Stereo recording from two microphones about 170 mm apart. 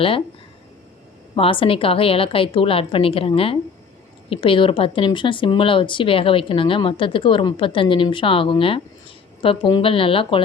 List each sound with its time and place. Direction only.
1.4 s speech: 30° left (ahead or behind)